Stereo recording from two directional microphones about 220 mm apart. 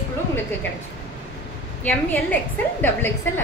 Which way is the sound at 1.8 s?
5° left (ahead or behind).